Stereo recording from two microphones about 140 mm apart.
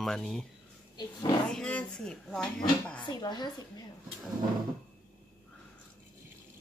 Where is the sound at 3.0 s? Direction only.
30° left (ahead or behind).